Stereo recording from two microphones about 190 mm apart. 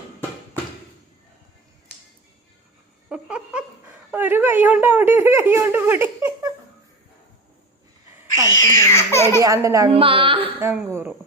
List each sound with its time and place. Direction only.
3.1 s a sound: 5° right (ahead or behind)
4.1 s speech: 10° right (ahead or behind)
8.7 s baby laughter: 15° left (ahead or behind)
9.4 s speech: 15° right (ahead or behind)
9.9 s a woman's voice: 30° right (ahead or behind)
10.6 s speech: 15° right (ahead or behind)